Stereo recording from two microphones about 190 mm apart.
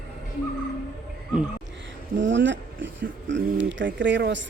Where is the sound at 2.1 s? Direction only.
75° right (ahead or behind).